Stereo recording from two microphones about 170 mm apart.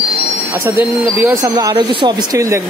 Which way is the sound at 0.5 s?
20° right (ahead or behind).